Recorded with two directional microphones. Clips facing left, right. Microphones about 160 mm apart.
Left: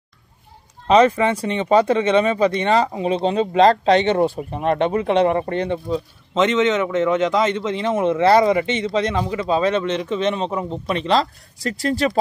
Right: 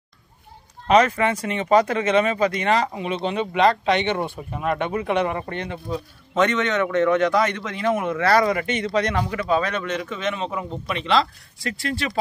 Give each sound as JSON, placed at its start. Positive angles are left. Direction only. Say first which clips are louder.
{"t": 0.8, "sound": "speech", "louder": "left 3 dB", "side_deg": 30}